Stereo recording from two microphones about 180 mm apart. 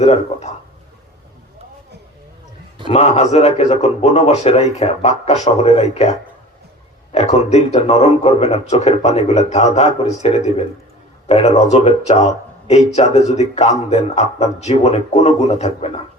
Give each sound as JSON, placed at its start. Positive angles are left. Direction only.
{"t": 0.0, "sound": "a man's voice", "side_deg": 40}
{"t": 2.9, "sound": "a man's voice", "side_deg": 35}